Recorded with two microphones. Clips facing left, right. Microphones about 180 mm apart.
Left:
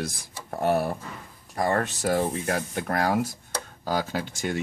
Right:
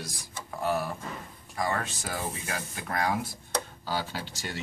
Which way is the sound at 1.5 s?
50° left (ahead or behind).